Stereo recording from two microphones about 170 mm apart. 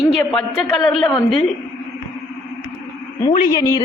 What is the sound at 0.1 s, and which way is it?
Speech, 5° left (ahead or behind).